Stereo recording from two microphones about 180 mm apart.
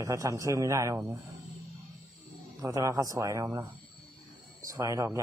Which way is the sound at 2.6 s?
20° right (ahead or behind).